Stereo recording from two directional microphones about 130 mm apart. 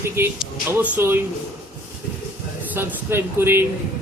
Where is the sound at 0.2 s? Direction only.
15° right (ahead or behind).